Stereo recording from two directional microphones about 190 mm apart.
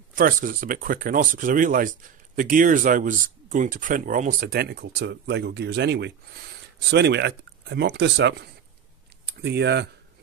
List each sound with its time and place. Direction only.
0.1 s speech: 45° right (ahead or behind); by 9.8 s 60° right (ahead or behind)